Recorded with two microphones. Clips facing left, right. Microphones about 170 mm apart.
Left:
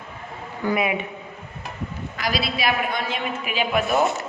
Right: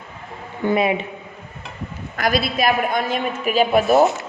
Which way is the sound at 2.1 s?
50° right (ahead or behind).